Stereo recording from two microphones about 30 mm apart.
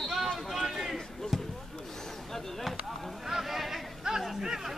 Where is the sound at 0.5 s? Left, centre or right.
Centre.